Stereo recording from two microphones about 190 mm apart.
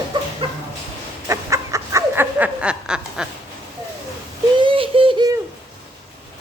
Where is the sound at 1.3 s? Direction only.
15° right (ahead or behind).